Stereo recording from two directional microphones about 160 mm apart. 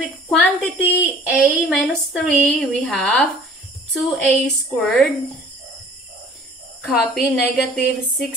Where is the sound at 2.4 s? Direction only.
5° left (ahead or behind).